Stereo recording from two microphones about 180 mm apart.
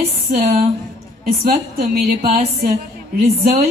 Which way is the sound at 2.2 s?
35° right (ahead or behind).